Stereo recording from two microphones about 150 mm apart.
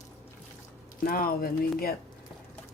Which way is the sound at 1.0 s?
75° left (ahead or behind).